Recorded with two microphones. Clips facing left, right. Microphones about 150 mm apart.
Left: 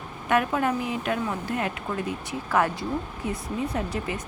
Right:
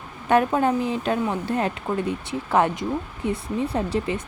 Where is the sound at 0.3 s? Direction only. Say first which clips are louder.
Right 4 dB; 30° right (ahead or behind).